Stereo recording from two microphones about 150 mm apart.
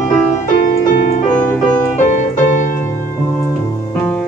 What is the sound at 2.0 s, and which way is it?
Piano, 60° left (ahead or behind).